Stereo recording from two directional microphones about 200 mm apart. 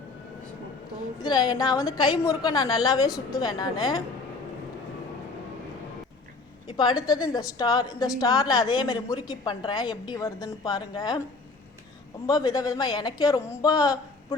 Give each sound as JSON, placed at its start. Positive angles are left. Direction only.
{"t": 1.2, "sound": "a man's voice", "side_deg": 20}
{"t": 6.7, "sound": "a woman's voice", "side_deg": 20}
{"t": 12.2, "sound": "a man's voice", "side_deg": 20}